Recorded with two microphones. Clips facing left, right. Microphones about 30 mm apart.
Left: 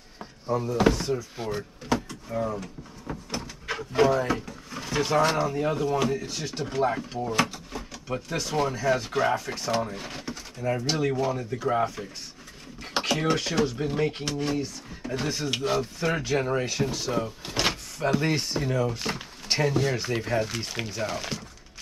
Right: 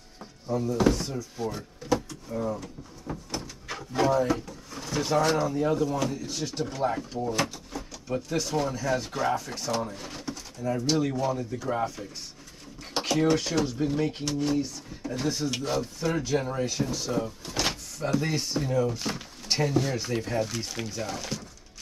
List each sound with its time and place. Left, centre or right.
0.6 s speech: left
1.5 s door: left
5.5 s speech: left
9.8 s a sound: left
10.9 s speech: centre